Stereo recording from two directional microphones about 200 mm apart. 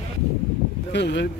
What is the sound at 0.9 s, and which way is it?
Speech, 60° left (ahead or behind).